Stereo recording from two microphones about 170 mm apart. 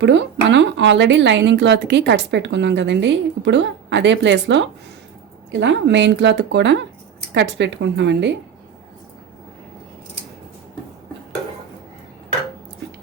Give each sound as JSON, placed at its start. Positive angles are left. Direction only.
{"t": 0.0, "sound": "speech", "side_deg": -90}